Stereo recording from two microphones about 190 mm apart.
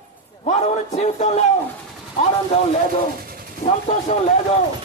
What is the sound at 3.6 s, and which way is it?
Speech, 35° left (ahead or behind).